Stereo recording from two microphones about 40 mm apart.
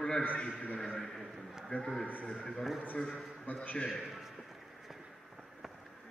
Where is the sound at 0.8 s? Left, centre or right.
Centre.